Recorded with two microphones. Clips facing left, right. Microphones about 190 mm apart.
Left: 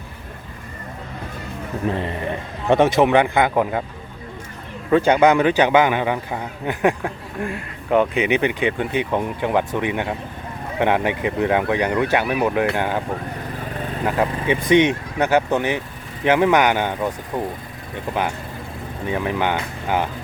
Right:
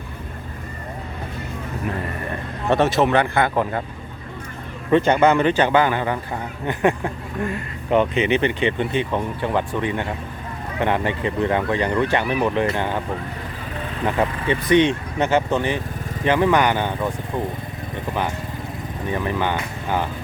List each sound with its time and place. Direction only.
1.9 s speech: 25° left (ahead or behind); by 3.8 s 10° left (ahead or behind)
4.9 s speech: 10° left (ahead or behind)
14.0 s speech: 10° left (ahead or behind)
19.0 s speech: 10° left (ahead or behind)